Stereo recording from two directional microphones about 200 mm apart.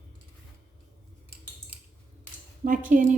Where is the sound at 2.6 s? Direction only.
40° right (ahead or behind).